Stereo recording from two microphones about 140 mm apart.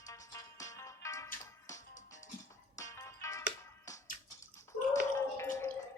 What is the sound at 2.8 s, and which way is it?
Music, 20° left (ahead or behind).